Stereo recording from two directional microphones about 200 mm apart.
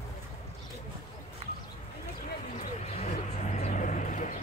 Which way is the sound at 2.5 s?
35° left (ahead or behind).